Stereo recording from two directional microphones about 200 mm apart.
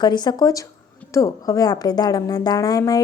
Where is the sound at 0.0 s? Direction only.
20° left (ahead or behind).